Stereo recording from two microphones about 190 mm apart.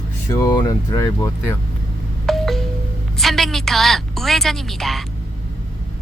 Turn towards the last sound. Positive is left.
turn(degrees=0)  # may be behind; listen again after turning